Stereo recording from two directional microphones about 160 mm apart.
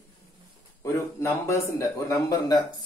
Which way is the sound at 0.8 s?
15° left (ahead or behind).